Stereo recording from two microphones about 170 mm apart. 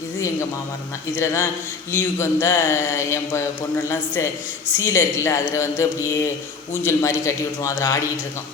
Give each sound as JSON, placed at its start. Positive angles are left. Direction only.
{"t": 1.1, "sound": "speech", "side_deg": 15}